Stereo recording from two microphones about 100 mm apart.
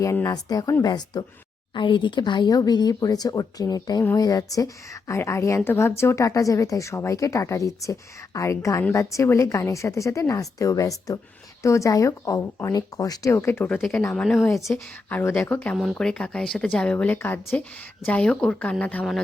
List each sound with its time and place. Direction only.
0.0 s a woman's voice: 30° left (ahead or behind)
1.7 s a woman's voice: 55° left (ahead or behind); by 13.8 s 20° left (ahead or behind)
14.0 s speech: 10° left (ahead or behind)
15.7 s speech: centre (ahead or behind)